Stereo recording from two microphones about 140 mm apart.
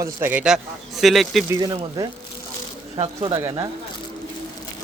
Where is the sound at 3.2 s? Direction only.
30° right (ahead or behind).